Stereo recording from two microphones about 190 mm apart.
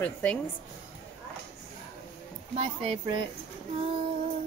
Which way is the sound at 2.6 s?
30° right (ahead or behind).